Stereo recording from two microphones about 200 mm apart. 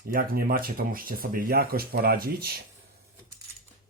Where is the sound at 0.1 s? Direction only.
45° right (ahead or behind).